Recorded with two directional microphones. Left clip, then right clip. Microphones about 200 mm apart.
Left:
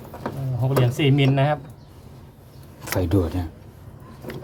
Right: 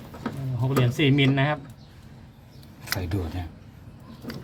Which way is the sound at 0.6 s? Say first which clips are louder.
Left 2 dB; centre (ahead or behind).